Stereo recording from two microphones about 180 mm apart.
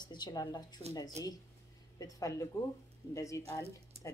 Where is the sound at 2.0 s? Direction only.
20° left (ahead or behind).